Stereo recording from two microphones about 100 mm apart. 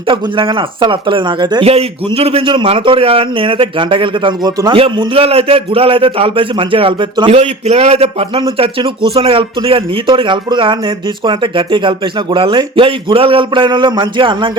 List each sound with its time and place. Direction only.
0.1 s speech: 60° right (ahead or behind)
1.6 s a man's voice: 85° right
2.6 s speech: 60° right (ahead or behind)
4.8 s speech: 75° right (ahead or behind); by 7.3 s 55° right (ahead or behind)
7.3 s a man's voice: 90° right; by 14.5 s 55° right (ahead or behind)